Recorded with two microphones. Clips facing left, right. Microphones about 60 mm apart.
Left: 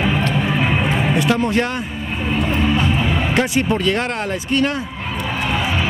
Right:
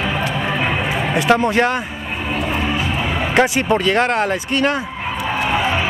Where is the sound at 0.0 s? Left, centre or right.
Centre.